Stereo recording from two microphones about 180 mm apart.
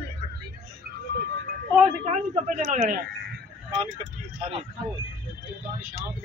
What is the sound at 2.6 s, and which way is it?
Speech, 45° right (ahead or behind).